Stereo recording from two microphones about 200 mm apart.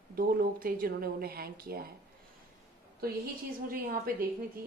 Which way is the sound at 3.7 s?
45° right (ahead or behind).